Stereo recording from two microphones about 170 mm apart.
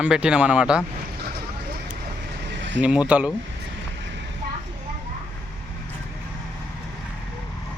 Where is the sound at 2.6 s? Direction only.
90° right.